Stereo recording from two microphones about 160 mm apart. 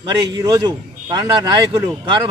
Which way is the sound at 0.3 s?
20° right (ahead or behind).